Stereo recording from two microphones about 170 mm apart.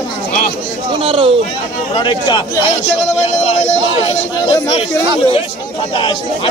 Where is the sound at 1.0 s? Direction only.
30° right (ahead or behind).